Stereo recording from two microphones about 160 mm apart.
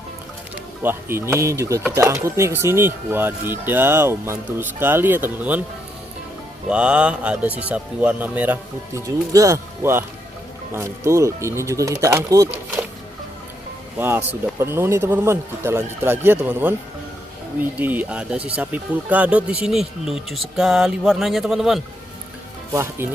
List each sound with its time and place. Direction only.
0.8 s speech: 15° right (ahead or behind)
6.7 s speech: 5° right (ahead or behind)
9.0 s speech: 20° right (ahead or behind)
14.0 s speech: 15° right (ahead or behind)
22.7 s speech: 15° right (ahead or behind)